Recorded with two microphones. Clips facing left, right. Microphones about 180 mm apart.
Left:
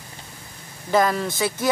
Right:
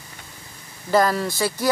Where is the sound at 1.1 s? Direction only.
20° left (ahead or behind).